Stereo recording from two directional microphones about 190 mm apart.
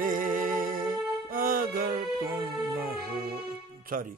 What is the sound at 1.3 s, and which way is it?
Music, 50° right (ahead or behind).